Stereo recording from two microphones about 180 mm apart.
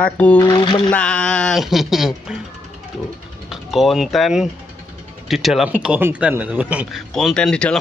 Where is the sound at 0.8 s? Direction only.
5° left (ahead or behind).